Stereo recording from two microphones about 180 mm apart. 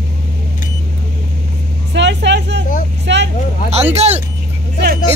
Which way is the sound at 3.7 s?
35° right (ahead or behind).